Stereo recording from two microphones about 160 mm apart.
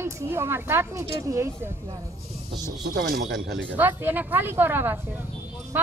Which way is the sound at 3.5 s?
90° right.